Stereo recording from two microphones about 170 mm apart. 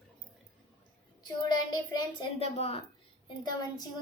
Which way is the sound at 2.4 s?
35° left (ahead or behind).